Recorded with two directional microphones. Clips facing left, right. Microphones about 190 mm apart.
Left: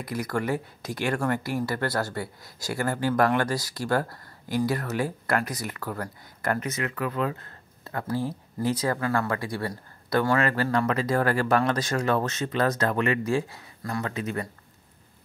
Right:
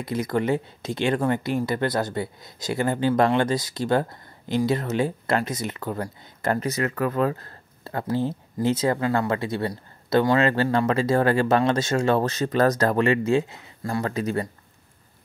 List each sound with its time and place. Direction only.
0.0 s speech: 20° right (ahead or behind)